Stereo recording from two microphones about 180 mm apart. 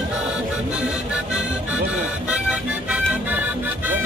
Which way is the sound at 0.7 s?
5° right (ahead or behind).